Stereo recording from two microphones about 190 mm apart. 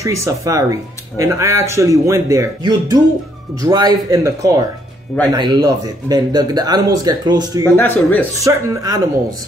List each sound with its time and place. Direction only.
0.0 s a man's voice: 15° right (ahead or behind)
7.6 s speech: 10° left (ahead or behind)
8.5 s speech: 20° right (ahead or behind)